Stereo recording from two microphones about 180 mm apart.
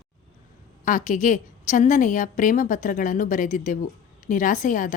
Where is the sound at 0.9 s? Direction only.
45° left (ahead or behind).